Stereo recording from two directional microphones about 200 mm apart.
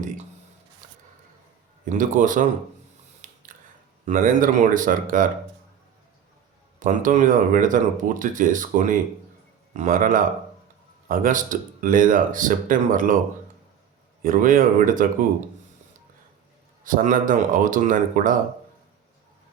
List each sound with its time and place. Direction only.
0.8 s a sound: 40° right (ahead or behind)
1.8 s speech: 40° right (ahead or behind)
3.2 s a sound: 40° right (ahead or behind)
4.0 s speech: 40° right (ahead or behind)
6.7 s speech: 40° right (ahead or behind)
14.2 s speech: 45° right (ahead or behind)
16.8 s speech: 40° right (ahead or behind)